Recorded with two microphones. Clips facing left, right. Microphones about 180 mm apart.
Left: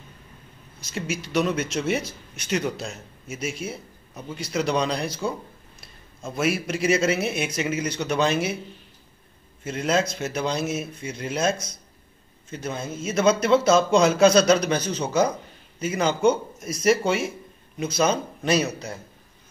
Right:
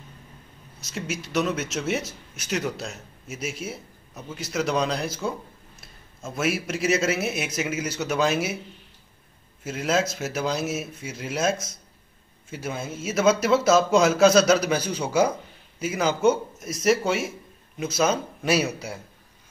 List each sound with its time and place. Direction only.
0.8 s speech: centre (ahead or behind)
9.6 s speech: 5° right (ahead or behind)